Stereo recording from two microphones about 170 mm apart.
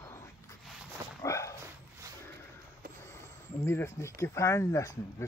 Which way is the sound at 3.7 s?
15° left (ahead or behind).